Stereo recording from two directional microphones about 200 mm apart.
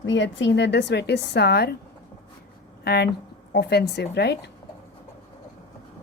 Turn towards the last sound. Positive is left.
turn(degrees=55)  # may be behind; listen again after turning